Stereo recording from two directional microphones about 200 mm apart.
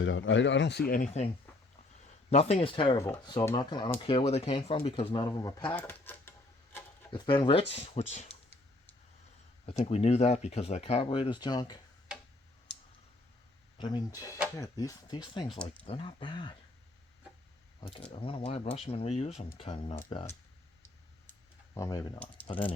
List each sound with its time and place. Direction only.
0.0 s speech: 70° left (ahead or behind); by 1.3 s 35° left (ahead or behind)
2.3 s speech: 30° left (ahead or behind); by 6.3 s 10° left (ahead or behind)
7.1 s speech: 25° left (ahead or behind)
9.6 s speech: 30° left (ahead or behind)
13.7 s speech: 20° left (ahead or behind)
17.7 s speech: 30° left (ahead or behind)
21.8 s speech: 15° left (ahead or behind)